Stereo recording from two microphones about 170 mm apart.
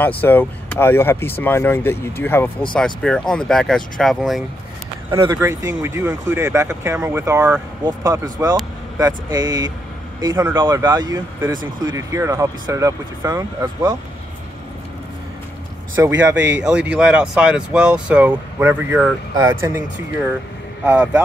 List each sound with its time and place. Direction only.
0.2 s speech: 10° left (ahead or behind)
5.1 s speech: 20° right (ahead or behind)
16.0 s speech: 15° right (ahead or behind)
20.8 s speech: 5° right (ahead or behind)